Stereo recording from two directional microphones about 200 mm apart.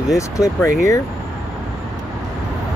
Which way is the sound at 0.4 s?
15° left (ahead or behind).